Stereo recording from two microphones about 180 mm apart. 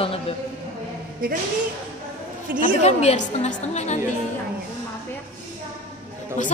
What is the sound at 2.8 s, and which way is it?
A woman's voice, 40° left (ahead or behind).